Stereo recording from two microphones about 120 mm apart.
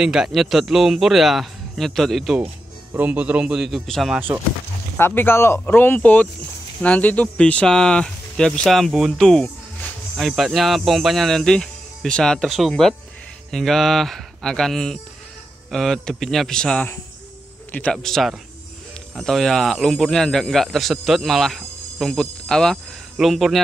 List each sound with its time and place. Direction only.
0.0 s a man's voice: 5° right (ahead or behind)
2.9 s a man's voice: 15° right (ahead or behind)
4.9 s a man's voice: 20° left (ahead or behind)
17.9 s a man's voice: centre (ahead or behind)